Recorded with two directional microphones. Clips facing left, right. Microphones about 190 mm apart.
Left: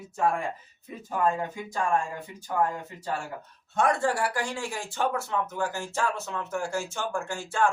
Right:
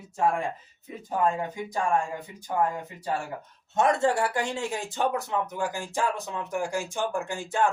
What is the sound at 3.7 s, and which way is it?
Speech, 25° right (ahead or behind).